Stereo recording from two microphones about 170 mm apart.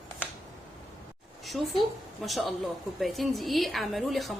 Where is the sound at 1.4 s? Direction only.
Centre (ahead or behind).